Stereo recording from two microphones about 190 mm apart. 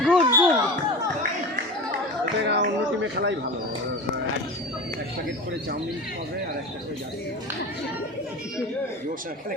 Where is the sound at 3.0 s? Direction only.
70° right (ahead or behind).